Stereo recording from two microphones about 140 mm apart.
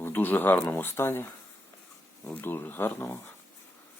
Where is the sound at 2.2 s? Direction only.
15° left (ahead or behind).